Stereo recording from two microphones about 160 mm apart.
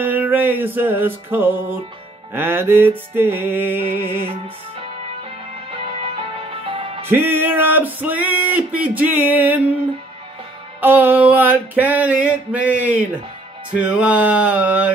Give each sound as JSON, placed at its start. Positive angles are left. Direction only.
{"t": 0.0, "sound": "music", "side_deg": -10}
{"t": 5.7, "sound": "music", "side_deg": -40}
{"t": 7.1, "sound": "music", "side_deg": -15}
{"t": 10.8, "sound": "music", "side_deg": -10}